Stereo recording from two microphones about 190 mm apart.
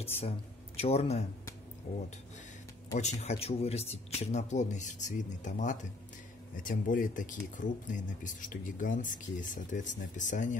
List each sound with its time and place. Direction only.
0.0 s speech: 30° left (ahead or behind)
3.0 s speech: 35° left (ahead or behind)